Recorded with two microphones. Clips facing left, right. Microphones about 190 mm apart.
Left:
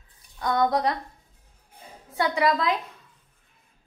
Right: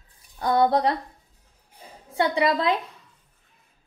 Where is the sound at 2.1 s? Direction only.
25° right (ahead or behind).